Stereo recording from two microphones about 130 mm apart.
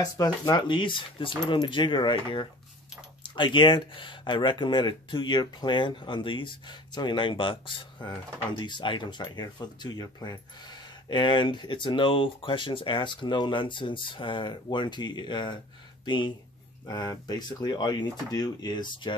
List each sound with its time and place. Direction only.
0.0 s speech: 35° left (ahead or behind)